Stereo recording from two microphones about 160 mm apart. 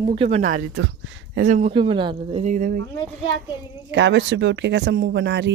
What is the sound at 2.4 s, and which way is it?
Speech, 50° right (ahead or behind).